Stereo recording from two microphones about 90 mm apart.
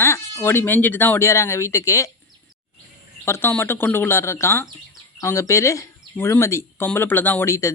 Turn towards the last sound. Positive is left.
turn(degrees=35)  # may be behind; listen again after turning